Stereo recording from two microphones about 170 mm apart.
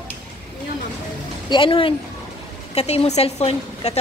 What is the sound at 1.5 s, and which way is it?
A woman's voice, 30° left (ahead or behind).